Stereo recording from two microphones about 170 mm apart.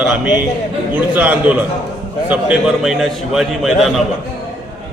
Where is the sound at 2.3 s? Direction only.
5° right (ahead or behind).